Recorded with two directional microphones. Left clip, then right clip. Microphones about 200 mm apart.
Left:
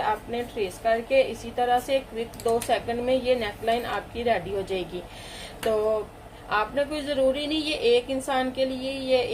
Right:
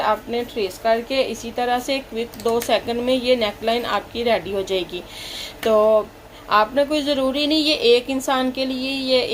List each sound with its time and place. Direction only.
0.3 s a woman's voice: 40° right (ahead or behind)
6.5 s a woman's voice: 40° right (ahead or behind)